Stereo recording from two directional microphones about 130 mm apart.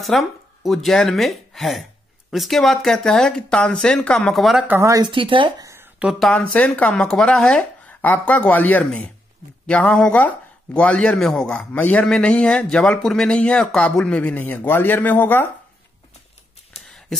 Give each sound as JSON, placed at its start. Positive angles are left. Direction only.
{"t": 0.0, "sound": "speech", "side_deg": 0}
{"t": 4.6, "sound": "speech", "side_deg": -20}
{"t": 5.1, "sound": "speech", "side_deg": -40}
{"t": 5.6, "sound": "a sound", "side_deg": -25}
{"t": 6.1, "sound": "speech", "side_deg": 5}
{"t": 16.7, "sound": "a sound", "side_deg": 0}